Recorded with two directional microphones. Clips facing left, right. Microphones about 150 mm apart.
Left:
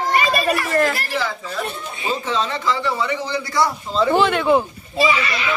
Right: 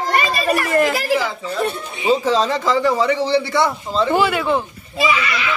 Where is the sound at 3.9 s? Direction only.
5° right (ahead or behind).